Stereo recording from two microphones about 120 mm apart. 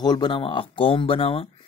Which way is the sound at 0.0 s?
35° left (ahead or behind).